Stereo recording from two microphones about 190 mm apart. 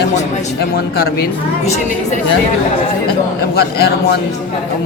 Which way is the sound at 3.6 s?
55° left (ahead or behind).